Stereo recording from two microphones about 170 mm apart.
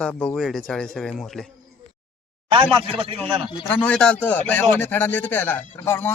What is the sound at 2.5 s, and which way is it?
Speech, 35° right (ahead or behind).